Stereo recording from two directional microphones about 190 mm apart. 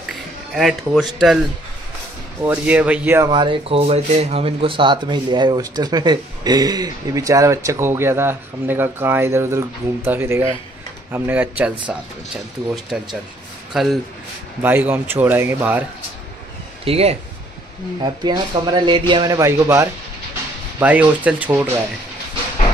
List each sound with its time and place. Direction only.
0.6 s speech: centre (ahead or behind)
2.4 s a man's voice: 5° right (ahead or behind)
3.3 s a man's voice: 25° right (ahead or behind); by 11.7 s 10° right (ahead or behind)
12.9 s a man's voice: 5° right (ahead or behind)
16.8 s a man's voice: 30° right (ahead or behind); by 21.6 s 10° right (ahead or behind)